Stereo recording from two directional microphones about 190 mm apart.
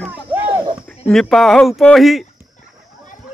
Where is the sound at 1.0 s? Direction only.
Centre (ahead or behind).